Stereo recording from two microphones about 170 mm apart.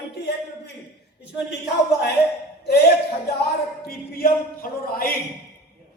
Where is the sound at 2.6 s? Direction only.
70° left (ahead or behind).